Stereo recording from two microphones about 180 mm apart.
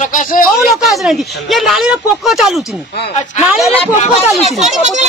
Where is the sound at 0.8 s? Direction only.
Centre (ahead or behind).